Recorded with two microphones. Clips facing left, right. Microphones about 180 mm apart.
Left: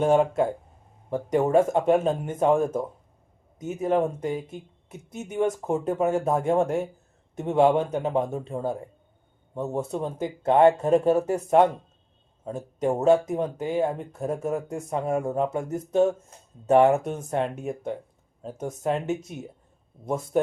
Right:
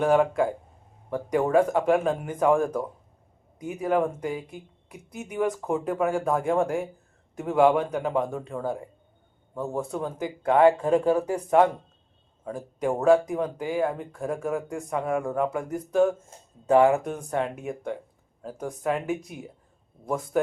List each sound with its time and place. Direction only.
0.0 s speech: 25° left (ahead or behind)